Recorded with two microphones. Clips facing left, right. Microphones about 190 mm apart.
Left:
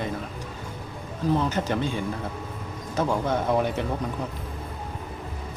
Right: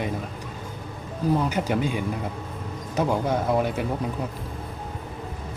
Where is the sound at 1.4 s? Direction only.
10° right (ahead or behind).